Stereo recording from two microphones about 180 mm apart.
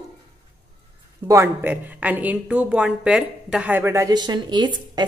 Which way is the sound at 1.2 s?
15° right (ahead or behind).